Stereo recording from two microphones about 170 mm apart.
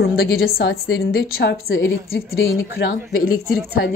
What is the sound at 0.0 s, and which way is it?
A woman's voice, 65° left (ahead or behind).